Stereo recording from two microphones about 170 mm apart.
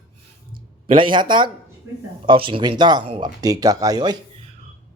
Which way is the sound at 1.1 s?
25° right (ahead or behind).